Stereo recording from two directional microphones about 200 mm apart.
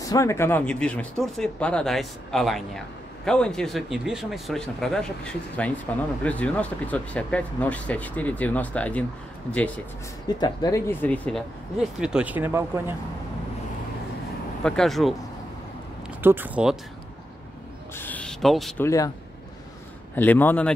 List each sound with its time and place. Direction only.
0.0 s speech: 15° left (ahead or behind)
10.2 s speech: 20° left (ahead or behind)
12.0 s speech: 5° right (ahead or behind)
14.6 s speech: centre (ahead or behind)
16.2 s speech: 10° right (ahead or behind)
17.9 s speech: 10° left (ahead or behind)
18.9 s speech: 15° left (ahead or behind)
20.2 s speech: 10° left (ahead or behind)